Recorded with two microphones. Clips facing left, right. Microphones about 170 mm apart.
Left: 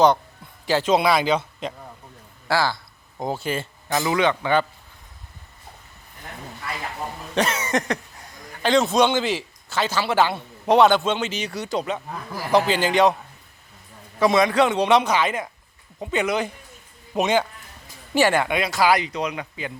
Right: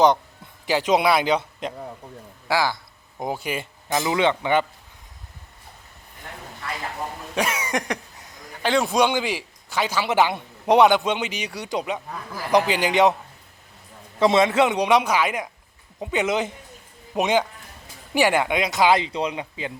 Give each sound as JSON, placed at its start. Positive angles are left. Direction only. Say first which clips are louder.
{"t": 0.7, "sound": "a man's voice", "louder": "even", "side_deg": -15}
{"t": 7.3, "sound": "cough", "louder": "left 2 dB", "side_deg": -10}
{"t": 8.6, "sound": "a man's voice", "louder": "left 2 dB", "side_deg": -10}
{"t": 12.1, "sound": "a man's voice", "louder": "left 1 dB", "side_deg": 10}
{"t": 12.5, "sound": "a man's voice", "louder": "even", "side_deg": -15}
{"t": 14.2, "sound": "a man's voice", "louder": "even", "side_deg": -25}